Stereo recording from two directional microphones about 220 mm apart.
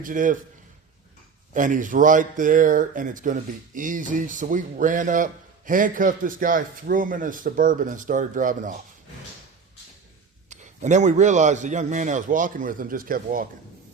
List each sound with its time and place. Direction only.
0.0 s speech: 35° right (ahead or behind)
1.5 s speech: 35° right (ahead or behind)
10.5 s speech: 35° right (ahead or behind)